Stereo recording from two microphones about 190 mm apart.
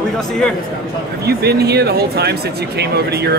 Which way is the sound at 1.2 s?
60° right (ahead or behind).